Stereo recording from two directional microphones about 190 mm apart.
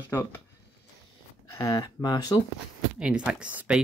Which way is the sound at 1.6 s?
15° left (ahead or behind).